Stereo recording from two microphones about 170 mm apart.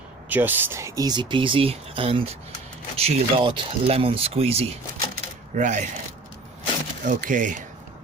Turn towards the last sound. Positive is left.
turn(degrees=-50)  # may be behind; listen again after turning